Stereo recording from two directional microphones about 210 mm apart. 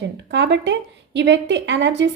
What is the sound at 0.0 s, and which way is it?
A woman's voice, 55° right (ahead or behind).